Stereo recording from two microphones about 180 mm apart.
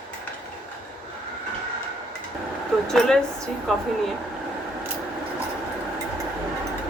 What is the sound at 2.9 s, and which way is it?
Speech, 5° left (ahead or behind).